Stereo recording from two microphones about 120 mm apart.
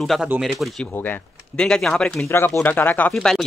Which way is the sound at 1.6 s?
5° left (ahead or behind).